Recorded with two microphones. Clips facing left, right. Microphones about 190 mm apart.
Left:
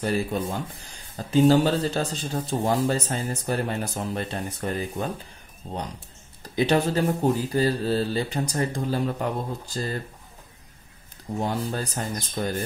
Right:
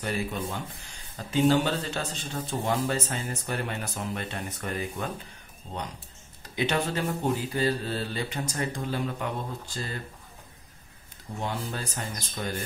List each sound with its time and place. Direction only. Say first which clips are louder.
0.0 s speech: left 5 dB; 35° left (ahead or behind)
11.3 s speech: left 6 dB; 40° left (ahead or behind)